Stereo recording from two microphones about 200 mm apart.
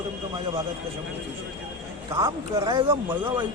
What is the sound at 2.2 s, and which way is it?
Speech, 25° right (ahead or behind).